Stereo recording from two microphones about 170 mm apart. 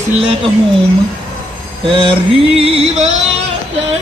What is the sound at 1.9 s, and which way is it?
Male singing, 30° right (ahead or behind).